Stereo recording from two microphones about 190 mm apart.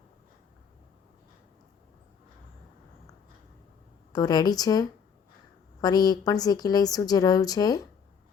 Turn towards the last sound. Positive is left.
turn(degrees=20)  # may be behind; listen again after turning